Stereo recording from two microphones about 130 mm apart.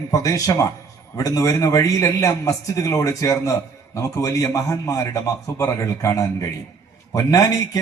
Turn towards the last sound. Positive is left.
turn(degrees=30)  # may be behind; listen again after turning